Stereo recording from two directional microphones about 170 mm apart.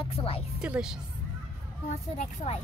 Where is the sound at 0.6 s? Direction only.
5° right (ahead or behind).